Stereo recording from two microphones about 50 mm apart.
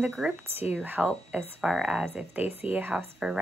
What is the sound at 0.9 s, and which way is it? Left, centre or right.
Speech, right.